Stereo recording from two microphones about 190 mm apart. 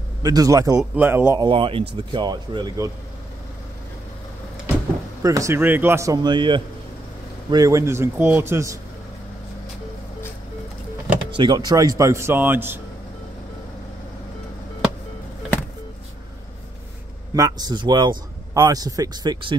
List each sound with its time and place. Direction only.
0.2 s speech: 20° right (ahead or behind)
1.4 s speech: 25° right (ahead or behind)
5.2 s speech: 15° right (ahead or behind)
11.3 s speech: 25° right (ahead or behind)
17.3 s speech: 20° right (ahead or behind)